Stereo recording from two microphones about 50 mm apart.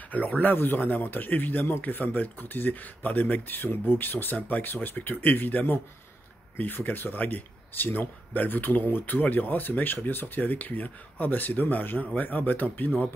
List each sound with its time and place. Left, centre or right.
0.1 s speech: left